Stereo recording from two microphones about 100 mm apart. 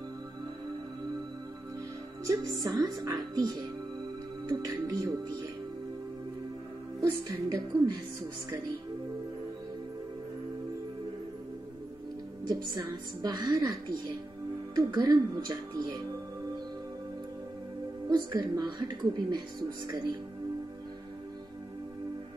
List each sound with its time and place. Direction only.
2.2 s a woman's voice: 40° right (ahead or behind)
7.0 s a woman's voice: 40° right (ahead or behind)
12.4 s a woman's voice: 45° right (ahead or behind)
14.8 s a woman's voice: 40° right (ahead or behind)
18.0 s a woman's voice: 45° right (ahead or behind)